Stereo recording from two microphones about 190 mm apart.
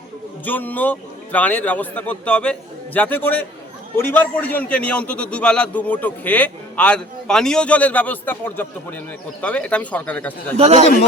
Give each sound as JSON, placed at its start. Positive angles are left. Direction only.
{"t": 0.4, "sound": "a man's voice", "side_deg": 10}
{"t": 10.6, "sound": "a man's voice", "side_deg": -35}